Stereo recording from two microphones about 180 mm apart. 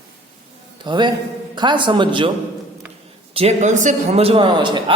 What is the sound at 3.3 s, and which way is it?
A man's voice, 40° right (ahead or behind).